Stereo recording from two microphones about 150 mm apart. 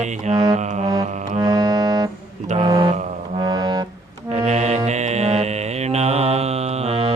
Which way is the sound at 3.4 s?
25° right (ahead or behind).